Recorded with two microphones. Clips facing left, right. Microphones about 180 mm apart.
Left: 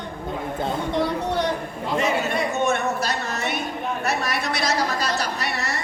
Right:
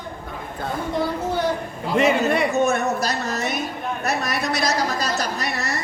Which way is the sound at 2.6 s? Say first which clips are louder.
Right 2 dB; 40° right (ahead or behind).